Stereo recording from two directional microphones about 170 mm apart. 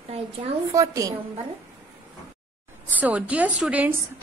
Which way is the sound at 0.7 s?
20° right (ahead or behind).